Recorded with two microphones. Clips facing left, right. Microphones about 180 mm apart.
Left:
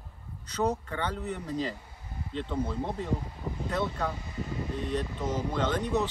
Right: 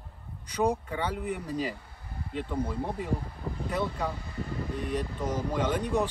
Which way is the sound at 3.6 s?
10° right (ahead or behind).